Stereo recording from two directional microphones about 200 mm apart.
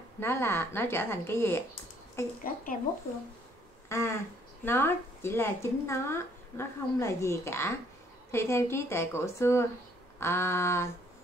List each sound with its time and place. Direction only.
0.2 s speech: 10° left (ahead or behind)
2.4 s speech: 45° left (ahead or behind)
3.9 s speech: 15° left (ahead or behind)